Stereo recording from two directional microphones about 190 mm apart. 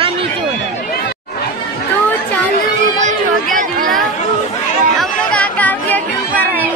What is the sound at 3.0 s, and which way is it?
Chatter, 45° right (ahead or behind).